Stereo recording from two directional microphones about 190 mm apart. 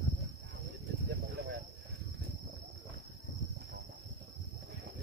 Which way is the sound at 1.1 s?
65° right (ahead or behind).